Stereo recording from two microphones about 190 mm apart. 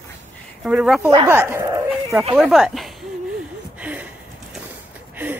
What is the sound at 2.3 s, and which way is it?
Speech, centre (ahead or behind).